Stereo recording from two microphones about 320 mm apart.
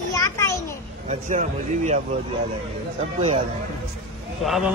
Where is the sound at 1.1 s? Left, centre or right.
Right.